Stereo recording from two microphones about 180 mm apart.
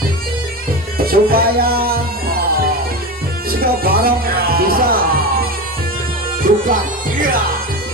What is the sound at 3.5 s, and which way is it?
Speech, 55° right (ahead or behind).